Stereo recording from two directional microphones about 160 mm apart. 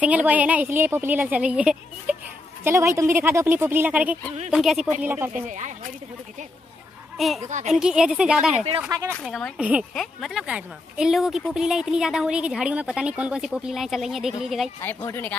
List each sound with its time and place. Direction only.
0.0 s a woman's voice: 10° right (ahead or behind)
5.0 s a woman's voice: 15° right (ahead or behind)
5.3 s speech: 50° right (ahead or behind)
7.2 s a woman's voice: centre (ahead or behind)
7.4 s speech: 50° right (ahead or behind)
7.7 s a woman's voice: 5° right (ahead or behind)
14.8 s speech: 15° left (ahead or behind)